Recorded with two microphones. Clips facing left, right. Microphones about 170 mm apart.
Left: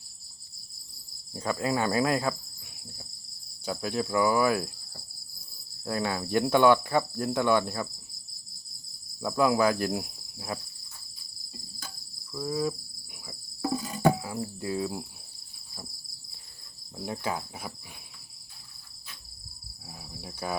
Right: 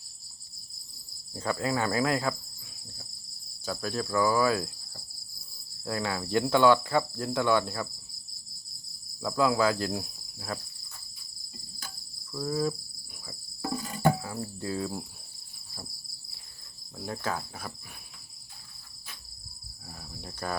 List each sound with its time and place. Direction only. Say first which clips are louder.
1.3 s cricket: left 1 dB; 20° left (ahead or behind)
3.7 s cricket: left 2 dB; 15° left (ahead or behind)
5.8 s cricket: left 2 dB; 20° left (ahead or behind)
9.2 s cricket: left 1 dB; 20° left (ahead or behind)
12.3 s insect: even; 10° left (ahead or behind)
13.7 s cricket: left 1 dB; 10° left (ahead or behind)
17.1 s cricket: left 1 dB; 15° left (ahead or behind)
19.9 s cricket: even; 10° left (ahead or behind)